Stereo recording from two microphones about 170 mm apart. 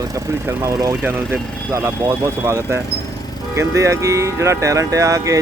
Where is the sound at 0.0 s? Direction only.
20° right (ahead or behind).